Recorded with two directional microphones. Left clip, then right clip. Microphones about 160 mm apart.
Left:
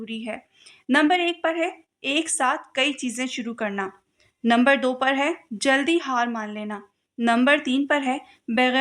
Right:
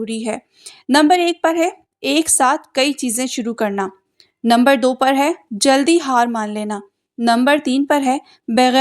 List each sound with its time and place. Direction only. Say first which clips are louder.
0.0 s a woman's voice: right 9 dB; 45° right (ahead or behind)
7.4 s a woman's voice: right 5 dB; 40° right (ahead or behind)